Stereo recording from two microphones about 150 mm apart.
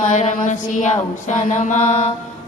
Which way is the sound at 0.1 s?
55° left (ahead or behind).